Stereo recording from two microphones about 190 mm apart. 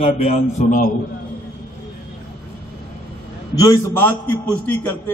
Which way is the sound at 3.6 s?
20° left (ahead or behind).